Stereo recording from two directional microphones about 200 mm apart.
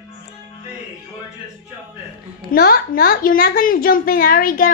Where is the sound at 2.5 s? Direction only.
50° left (ahead or behind).